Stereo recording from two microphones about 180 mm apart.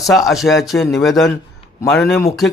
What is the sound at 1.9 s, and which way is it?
Speech, 5° left (ahead or behind).